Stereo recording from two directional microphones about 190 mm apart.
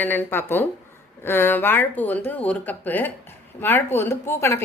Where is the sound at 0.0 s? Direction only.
10° left (ahead or behind).